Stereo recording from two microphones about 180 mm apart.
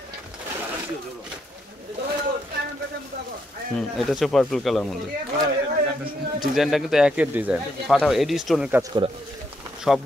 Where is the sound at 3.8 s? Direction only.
Centre (ahead or behind).